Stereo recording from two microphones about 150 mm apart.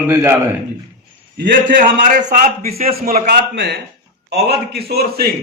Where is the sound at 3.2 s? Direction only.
90° right.